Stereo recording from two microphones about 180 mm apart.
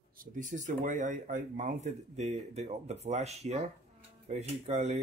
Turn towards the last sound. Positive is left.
turn(degrees=-40)  # may be behind; listen again after turning